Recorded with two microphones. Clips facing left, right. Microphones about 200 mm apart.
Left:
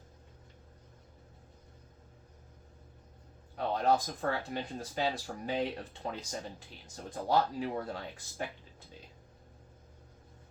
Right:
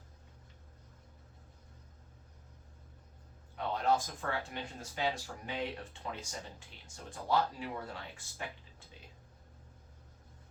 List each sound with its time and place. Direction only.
3.5 s speech: 40° left (ahead or behind)